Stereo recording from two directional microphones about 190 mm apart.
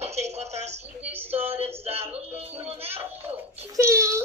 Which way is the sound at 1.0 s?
10° right (ahead or behind).